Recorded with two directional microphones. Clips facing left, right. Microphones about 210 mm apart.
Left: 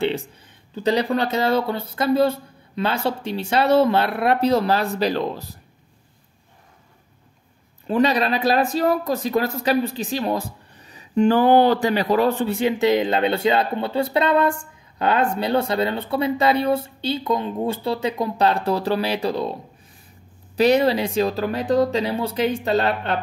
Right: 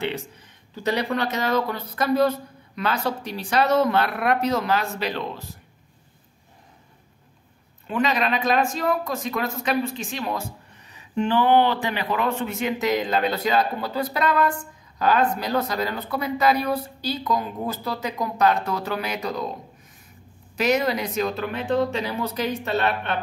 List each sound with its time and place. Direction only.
0.0 s a man's voice: 30° left (ahead or behind)
7.8 s speech: 35° left (ahead or behind)
20.5 s speech: 35° left (ahead or behind)